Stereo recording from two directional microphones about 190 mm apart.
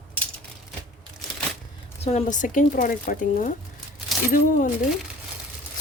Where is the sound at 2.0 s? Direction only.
35° left (ahead or behind).